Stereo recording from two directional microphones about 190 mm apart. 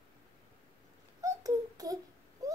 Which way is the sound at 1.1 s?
20° right (ahead or behind).